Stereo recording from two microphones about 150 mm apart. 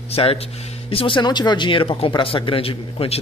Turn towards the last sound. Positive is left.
turn(degrees=40)  # may be behind; listen again after turning